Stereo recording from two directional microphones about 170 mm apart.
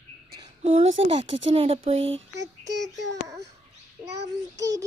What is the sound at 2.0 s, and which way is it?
Speech, 90° right.